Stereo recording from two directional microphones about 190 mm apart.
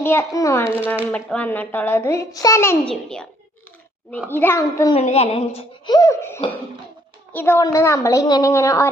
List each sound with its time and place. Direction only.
0.0 s a child's voice: 10° left (ahead or behind)
4.3 s a child's voice: 10° left (ahead or behind)
4.9 s a woman's voice: 35° left (ahead or behind)
5.5 s a child's voice: 20° left (ahead or behind)